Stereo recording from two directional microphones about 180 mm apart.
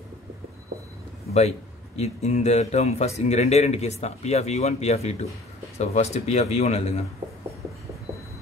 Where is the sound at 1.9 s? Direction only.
40° left (ahead or behind).